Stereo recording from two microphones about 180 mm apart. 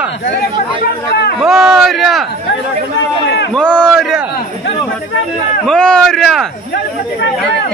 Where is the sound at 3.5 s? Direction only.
5° left (ahead or behind).